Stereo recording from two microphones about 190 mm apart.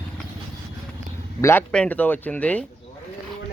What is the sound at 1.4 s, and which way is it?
Speech, 10° left (ahead or behind).